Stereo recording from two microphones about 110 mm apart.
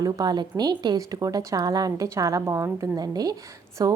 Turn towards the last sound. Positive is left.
turn(degrees=-35)  # may be behind; listen again after turning